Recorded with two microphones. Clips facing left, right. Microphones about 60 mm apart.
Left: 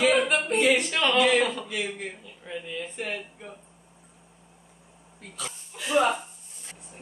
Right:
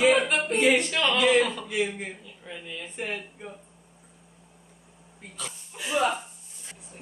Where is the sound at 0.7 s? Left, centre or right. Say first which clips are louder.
Left 1 dB; centre.